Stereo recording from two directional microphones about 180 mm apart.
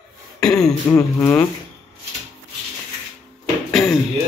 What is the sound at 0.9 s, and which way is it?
Speech, 15° left (ahead or behind).